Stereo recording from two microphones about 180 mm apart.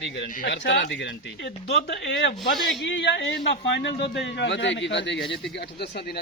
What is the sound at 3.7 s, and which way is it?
Speech, 65° left (ahead or behind).